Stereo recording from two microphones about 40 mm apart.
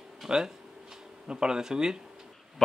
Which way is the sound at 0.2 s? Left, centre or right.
Centre.